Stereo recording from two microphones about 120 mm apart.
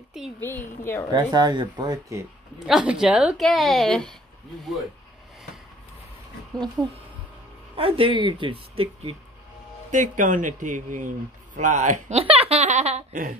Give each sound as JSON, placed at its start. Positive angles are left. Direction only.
{"t": 0.4, "sound": "a woman's voice", "side_deg": 20}
{"t": 1.1, "sound": "speech", "side_deg": -35}
{"t": 2.6, "sound": "a woman's voice", "side_deg": -5}
{"t": 6.5, "sound": "a woman's voice", "side_deg": 5}
{"t": 7.7, "sound": "a woman's voice", "side_deg": -50}
{"t": 9.8, "sound": "speech", "side_deg": -90}